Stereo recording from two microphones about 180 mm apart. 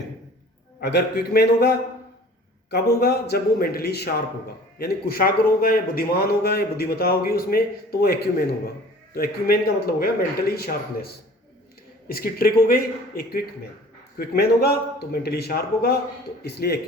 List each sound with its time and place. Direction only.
0.8 s a man's voice: 65° left (ahead or behind)